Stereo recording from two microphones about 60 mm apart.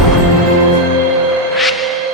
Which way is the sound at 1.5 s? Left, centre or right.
Centre.